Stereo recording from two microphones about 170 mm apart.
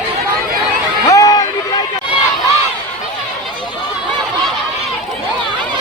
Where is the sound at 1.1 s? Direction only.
20° left (ahead or behind).